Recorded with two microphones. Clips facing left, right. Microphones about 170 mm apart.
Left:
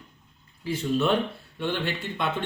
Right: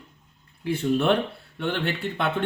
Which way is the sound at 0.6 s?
60° right (ahead or behind).